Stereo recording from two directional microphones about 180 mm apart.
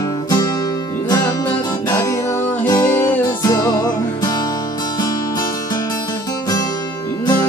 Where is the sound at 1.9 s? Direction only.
15° left (ahead or behind).